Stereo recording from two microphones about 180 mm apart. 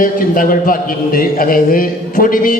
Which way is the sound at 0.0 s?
50° left (ahead or behind).